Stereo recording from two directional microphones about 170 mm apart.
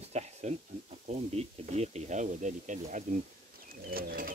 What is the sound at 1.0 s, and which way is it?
Speech, 40° right (ahead or behind).